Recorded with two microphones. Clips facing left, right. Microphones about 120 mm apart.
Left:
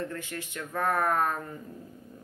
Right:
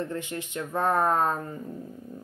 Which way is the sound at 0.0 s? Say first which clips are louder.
Right 3 dB; 20° right (ahead or behind).